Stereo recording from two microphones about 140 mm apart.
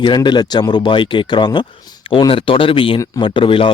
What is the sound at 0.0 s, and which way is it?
Speech, 35° left (ahead or behind).